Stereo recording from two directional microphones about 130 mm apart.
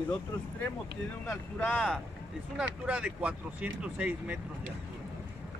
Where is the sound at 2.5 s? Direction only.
10° right (ahead or behind).